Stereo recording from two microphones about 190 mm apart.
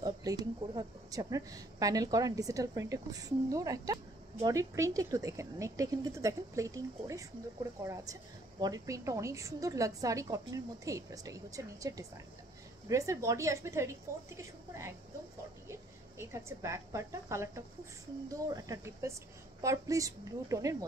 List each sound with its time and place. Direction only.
0.0 s a woman's voice: 20° right (ahead or behind)